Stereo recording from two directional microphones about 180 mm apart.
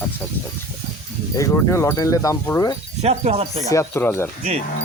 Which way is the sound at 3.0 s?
35° right (ahead or behind).